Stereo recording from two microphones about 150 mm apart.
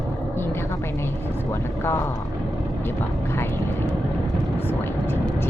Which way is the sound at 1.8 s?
15° left (ahead or behind).